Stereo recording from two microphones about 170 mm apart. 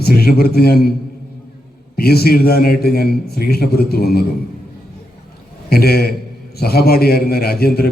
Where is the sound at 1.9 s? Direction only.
65° left (ahead or behind).